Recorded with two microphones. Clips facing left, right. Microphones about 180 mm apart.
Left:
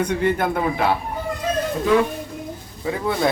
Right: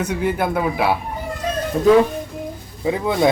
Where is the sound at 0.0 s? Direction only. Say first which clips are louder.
Left 1 dB; 5° right (ahead or behind).